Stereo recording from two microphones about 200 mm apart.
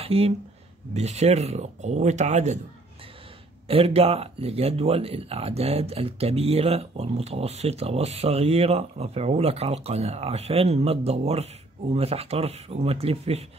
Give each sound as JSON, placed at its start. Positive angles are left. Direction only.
{"t": 0.0, "sound": "speech", "side_deg": -30}
{"t": 3.6, "sound": "speech", "side_deg": -30}